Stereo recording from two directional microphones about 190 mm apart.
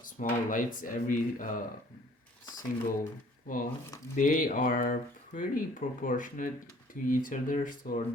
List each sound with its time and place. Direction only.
0.0 s speech: 45° left (ahead or behind)
3.4 s speech: 45° left (ahead or behind)